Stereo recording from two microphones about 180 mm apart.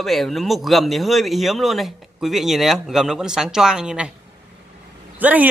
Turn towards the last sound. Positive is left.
turn(degrees=-10)  # may be behind; listen again after turning